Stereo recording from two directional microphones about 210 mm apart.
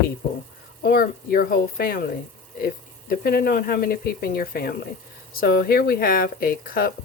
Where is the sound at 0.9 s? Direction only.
45° left (ahead or behind).